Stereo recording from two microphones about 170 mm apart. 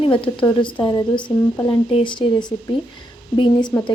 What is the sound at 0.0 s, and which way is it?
A woman's voice, 30° left (ahead or behind).